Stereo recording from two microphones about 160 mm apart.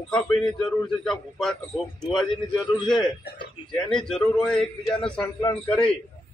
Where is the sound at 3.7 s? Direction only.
5° left (ahead or behind).